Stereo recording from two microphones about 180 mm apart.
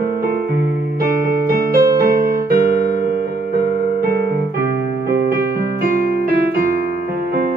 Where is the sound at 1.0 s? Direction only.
55° right (ahead or behind).